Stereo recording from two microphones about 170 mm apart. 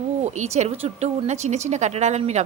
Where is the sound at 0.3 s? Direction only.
40° right (ahead or behind).